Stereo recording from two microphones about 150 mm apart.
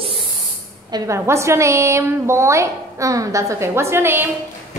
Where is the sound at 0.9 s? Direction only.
20° right (ahead or behind).